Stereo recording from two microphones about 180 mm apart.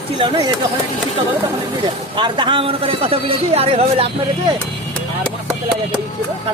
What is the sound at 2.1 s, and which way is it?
A man's voice, 25° right (ahead or behind).